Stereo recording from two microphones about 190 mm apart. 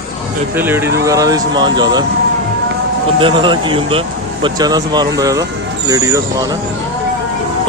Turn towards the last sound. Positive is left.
turn(degrees=-20)  # may be behind; listen again after turning